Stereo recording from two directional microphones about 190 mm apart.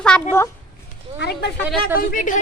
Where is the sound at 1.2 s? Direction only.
60° left (ahead or behind).